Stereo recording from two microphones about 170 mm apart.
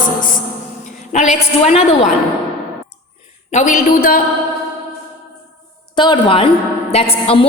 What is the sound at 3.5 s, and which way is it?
Speech, 50° left (ahead or behind).